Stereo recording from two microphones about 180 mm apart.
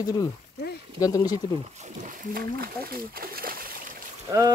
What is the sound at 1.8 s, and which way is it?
Speech, 45° right (ahead or behind).